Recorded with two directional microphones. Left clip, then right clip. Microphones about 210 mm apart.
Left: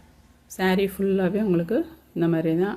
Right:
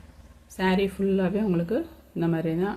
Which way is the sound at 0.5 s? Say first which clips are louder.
Left 2 dB; 25° left (ahead or behind).